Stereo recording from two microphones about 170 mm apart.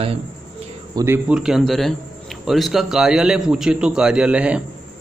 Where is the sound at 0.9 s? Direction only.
15° right (ahead or behind).